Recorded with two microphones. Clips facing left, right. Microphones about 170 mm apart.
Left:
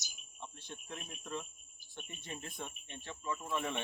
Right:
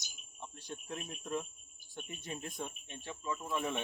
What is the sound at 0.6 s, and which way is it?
Speech, 10° right (ahead or behind).